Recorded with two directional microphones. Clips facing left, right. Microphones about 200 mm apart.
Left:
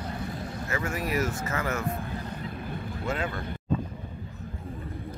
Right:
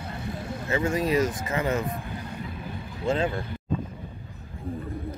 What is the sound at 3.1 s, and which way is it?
Speech, 25° right (ahead or behind).